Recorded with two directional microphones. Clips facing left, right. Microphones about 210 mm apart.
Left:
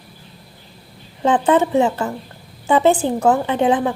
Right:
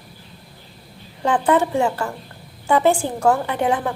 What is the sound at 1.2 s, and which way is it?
A woman's voice, 20° left (ahead or behind).